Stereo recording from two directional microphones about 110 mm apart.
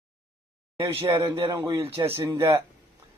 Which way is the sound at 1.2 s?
35° right (ahead or behind).